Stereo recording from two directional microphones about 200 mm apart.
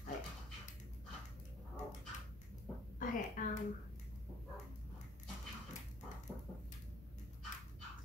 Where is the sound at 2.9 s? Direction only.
40° left (ahead or behind).